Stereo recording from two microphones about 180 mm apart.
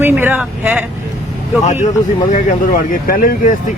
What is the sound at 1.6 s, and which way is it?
Speech, 40° left (ahead or behind).